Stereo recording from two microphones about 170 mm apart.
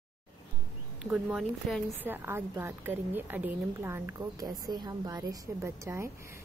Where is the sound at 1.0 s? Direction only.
5° right (ahead or behind).